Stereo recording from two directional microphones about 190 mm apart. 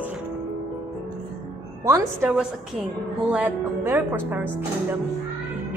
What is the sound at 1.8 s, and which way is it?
Speech, 15° right (ahead or behind).